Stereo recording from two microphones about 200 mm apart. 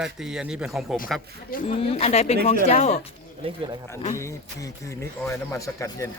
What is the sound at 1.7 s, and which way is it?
Speech, 35° left (ahead or behind).